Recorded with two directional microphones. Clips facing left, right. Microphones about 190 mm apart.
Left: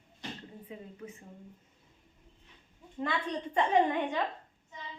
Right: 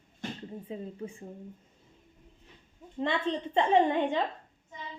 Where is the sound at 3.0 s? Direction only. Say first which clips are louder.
Right 4 dB; 25° right (ahead or behind).